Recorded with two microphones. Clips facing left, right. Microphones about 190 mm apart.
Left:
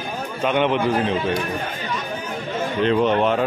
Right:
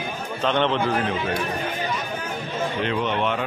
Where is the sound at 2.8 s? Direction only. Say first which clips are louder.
Left 8 dB; 35° left (ahead or behind).